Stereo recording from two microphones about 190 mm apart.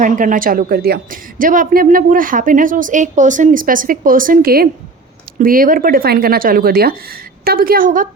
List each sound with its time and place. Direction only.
0.0 s a woman's voice: 45° right (ahead or behind)